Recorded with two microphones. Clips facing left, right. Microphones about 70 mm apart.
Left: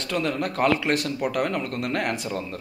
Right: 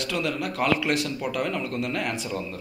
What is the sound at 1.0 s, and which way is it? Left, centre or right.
A man's voice, left.